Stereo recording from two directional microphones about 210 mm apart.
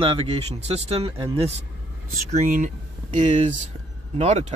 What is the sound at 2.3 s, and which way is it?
Speech, 40° right (ahead or behind).